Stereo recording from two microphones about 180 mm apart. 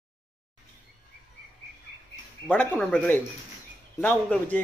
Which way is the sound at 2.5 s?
10° left (ahead or behind).